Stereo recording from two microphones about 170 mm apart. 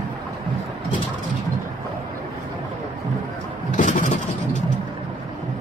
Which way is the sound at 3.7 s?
45° left (ahead or behind).